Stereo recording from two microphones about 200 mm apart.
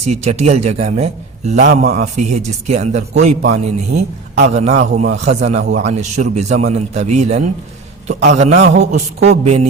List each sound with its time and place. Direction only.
0.0 s a man's voice: 35° right (ahead or behind)